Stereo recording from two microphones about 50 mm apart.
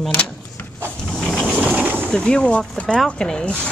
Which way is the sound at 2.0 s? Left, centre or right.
Centre.